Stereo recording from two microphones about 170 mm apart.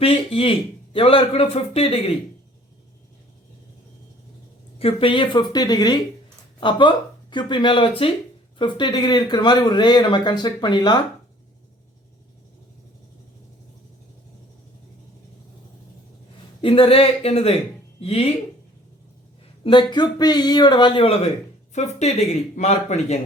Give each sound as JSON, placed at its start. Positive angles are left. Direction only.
{"t": 0.0, "sound": "a man's voice", "side_deg": 35}
{"t": 4.8, "sound": "speech", "side_deg": 35}
{"t": 16.6, "sound": "a man's voice", "side_deg": 30}
{"t": 19.6, "sound": "a man's voice", "side_deg": 25}